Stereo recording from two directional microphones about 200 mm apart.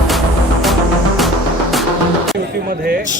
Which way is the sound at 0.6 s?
Centre (ahead or behind).